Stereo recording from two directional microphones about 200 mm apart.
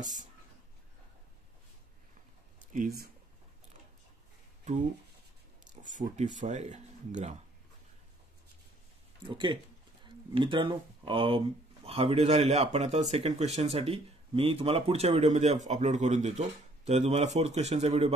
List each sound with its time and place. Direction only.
0.0 s speech: 40° right (ahead or behind)
2.7 s speech: 45° right (ahead or behind)
5.8 s speech: 40° right (ahead or behind)
9.2 s speech: 25° right (ahead or behind)